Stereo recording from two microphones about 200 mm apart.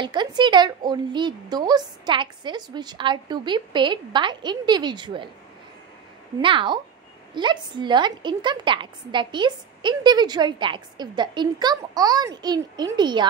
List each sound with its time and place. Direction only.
0.0 s speech: 25° right (ahead or behind)
6.4 s speech: 25° right (ahead or behind)